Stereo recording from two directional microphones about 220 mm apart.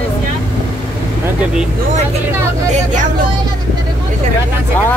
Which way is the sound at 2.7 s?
35° right (ahead or behind).